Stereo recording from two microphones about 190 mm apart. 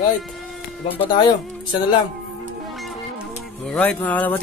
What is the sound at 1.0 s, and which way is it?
Speech, 25° left (ahead or behind).